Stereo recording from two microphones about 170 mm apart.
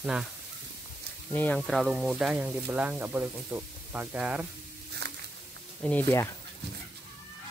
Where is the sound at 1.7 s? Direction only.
Centre (ahead or behind).